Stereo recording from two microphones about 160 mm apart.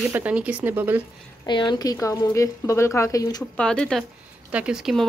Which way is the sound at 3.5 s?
5° left (ahead or behind).